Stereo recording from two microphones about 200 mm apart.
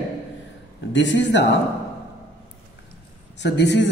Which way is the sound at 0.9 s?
65° left (ahead or behind).